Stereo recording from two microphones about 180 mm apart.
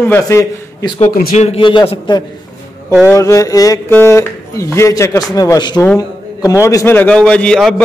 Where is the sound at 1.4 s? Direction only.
30° left (ahead or behind).